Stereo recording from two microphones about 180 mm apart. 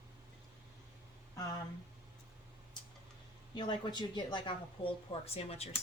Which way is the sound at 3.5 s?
25° left (ahead or behind).